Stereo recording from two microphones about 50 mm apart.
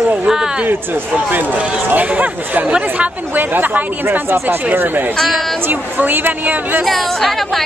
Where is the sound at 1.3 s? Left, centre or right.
Right.